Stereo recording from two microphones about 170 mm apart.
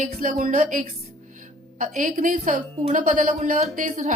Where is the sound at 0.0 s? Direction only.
50° right (ahead or behind).